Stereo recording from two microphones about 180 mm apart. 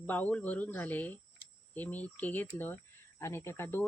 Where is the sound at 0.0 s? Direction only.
10° left (ahead or behind).